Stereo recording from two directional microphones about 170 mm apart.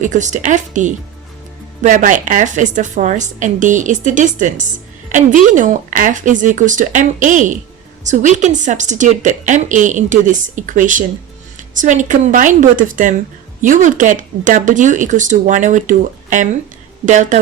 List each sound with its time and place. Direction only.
0.0 s a woman's voice: 45° right (ahead or behind)